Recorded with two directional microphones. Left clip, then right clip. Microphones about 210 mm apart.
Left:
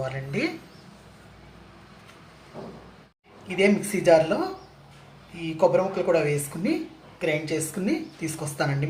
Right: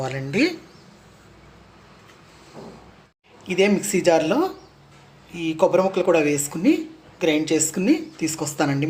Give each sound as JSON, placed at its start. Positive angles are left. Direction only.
{"t": 0.0, "sound": "speech", "side_deg": -50}
{"t": 3.5, "sound": "speech", "side_deg": -45}
{"t": 5.5, "sound": "speech", "side_deg": -45}